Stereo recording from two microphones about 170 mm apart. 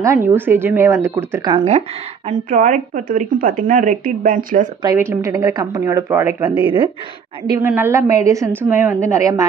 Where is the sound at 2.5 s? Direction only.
50° right (ahead or behind).